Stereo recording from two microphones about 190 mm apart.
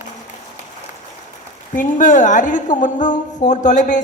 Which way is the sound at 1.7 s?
40° left (ahead or behind).